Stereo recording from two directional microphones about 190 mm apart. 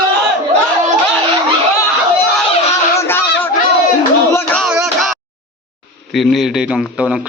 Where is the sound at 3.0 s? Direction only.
10° left (ahead or behind).